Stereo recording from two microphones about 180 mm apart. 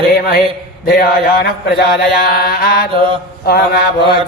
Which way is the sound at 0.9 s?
55° left (ahead or behind).